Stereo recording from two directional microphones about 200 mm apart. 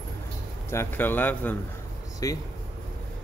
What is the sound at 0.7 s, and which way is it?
Speech, 10° left (ahead or behind).